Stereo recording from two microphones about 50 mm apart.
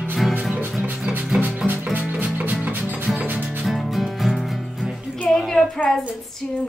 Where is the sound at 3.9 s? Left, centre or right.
Centre.